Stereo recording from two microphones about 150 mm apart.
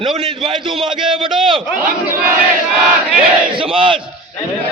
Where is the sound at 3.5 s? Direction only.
35° right (ahead or behind).